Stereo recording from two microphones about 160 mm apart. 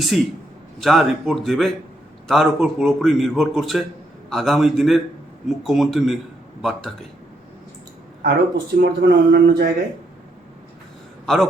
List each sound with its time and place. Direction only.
0.8 s a man's voice: centre (ahead or behind)
8.2 s a man's voice: 75° right (ahead or behind); by 9.6 s 90° right
11.3 s a man's voice: centre (ahead or behind)